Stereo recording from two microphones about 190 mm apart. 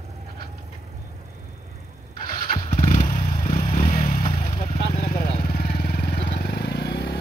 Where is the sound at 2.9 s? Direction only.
35° left (ahead or behind).